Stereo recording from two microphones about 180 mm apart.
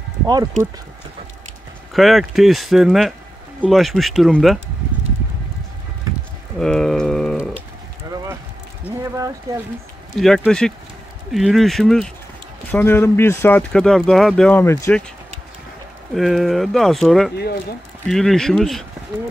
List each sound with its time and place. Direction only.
2.0 s speech: centre (ahead or behind)
6.6 s a sound: 5° left (ahead or behind)
8.8 s speech: 15° right (ahead or behind)
10.1 s speech: centre (ahead or behind)
12.7 s speech: 15° left (ahead or behind)
16.1 s speech: centre (ahead or behind)